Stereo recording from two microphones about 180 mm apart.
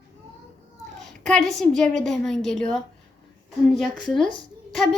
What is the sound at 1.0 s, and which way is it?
A woman's voice, 5° left (ahead or behind).